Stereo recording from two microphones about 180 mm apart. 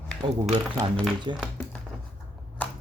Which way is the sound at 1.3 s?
25° right (ahead or behind).